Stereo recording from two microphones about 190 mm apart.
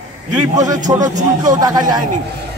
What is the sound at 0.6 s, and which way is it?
Speech, 20° right (ahead or behind).